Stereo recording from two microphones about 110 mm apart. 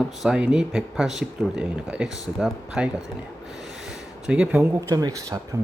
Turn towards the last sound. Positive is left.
turn(degrees=-30)  # may be behind; listen again after turning